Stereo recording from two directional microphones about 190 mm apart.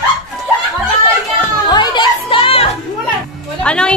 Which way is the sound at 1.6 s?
25° left (ahead or behind).